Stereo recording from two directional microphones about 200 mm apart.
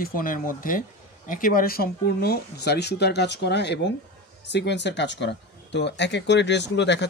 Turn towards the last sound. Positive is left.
turn(degrees=60)  # may be behind; listen again after turning